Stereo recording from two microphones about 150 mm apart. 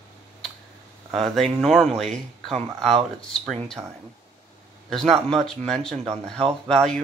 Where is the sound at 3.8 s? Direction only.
25° right (ahead or behind).